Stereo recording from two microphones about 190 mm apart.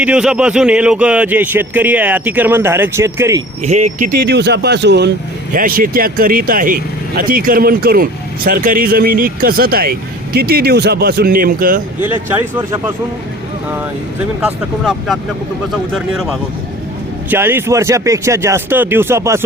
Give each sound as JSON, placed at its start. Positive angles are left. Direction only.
{"t": 0.0, "sound": "a man's voice", "side_deg": -5}
{"t": 3.6, "sound": "speech", "side_deg": -35}
{"t": 4.3, "sound": "speech", "side_deg": -60}
{"t": 5.5, "sound": "speech", "side_deg": -50}
{"t": 12.0, "sound": "a man's voice", "side_deg": -10}
{"t": 14.4, "sound": "speech", "side_deg": 0}
{"t": 17.2, "sound": "a man's voice", "side_deg": -10}